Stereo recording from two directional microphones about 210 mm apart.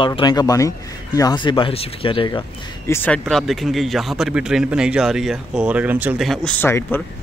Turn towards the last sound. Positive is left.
turn(degrees=10)  # may be behind; listen again after turning